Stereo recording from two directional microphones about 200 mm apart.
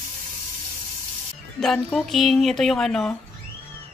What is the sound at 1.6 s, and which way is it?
A man's voice, centre (ahead or behind).